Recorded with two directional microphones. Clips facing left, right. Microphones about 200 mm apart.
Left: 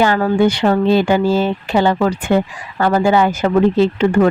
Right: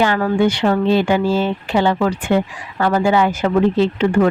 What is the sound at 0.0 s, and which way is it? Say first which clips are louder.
Speech: left 2 dB; 40° left (ahead or behind).